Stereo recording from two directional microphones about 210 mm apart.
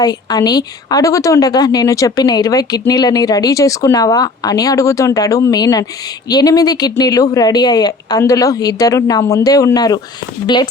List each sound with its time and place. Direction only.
0.0 s a woman's voice: 20° left (ahead or behind)